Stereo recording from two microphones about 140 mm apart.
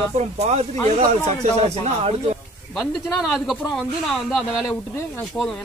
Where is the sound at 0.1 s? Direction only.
50° right (ahead or behind).